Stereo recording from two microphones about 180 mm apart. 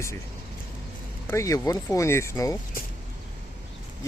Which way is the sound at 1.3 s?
15° left (ahead or behind).